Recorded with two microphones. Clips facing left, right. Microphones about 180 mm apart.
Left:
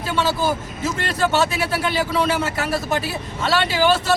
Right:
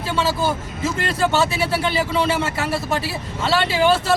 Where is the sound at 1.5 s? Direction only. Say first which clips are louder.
Right 1 dB; 30° right (ahead or behind).